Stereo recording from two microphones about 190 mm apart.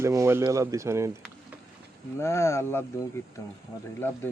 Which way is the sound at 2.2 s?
15° left (ahead or behind).